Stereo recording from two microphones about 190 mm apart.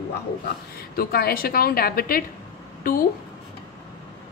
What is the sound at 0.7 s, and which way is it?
A woman's voice, 55° left (ahead or behind).